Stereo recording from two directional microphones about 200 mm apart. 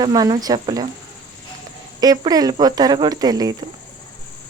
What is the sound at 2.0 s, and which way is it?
Speech, 20° right (ahead or behind).